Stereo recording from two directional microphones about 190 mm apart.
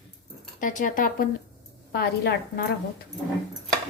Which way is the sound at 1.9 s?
55° left (ahead or behind).